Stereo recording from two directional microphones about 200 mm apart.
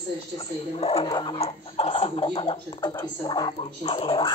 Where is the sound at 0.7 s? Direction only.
30° left (ahead or behind).